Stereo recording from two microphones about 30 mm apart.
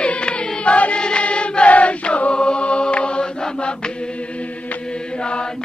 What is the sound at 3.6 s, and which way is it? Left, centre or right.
Chant, left.